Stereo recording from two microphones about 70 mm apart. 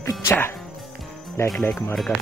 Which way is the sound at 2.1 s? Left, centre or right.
Left.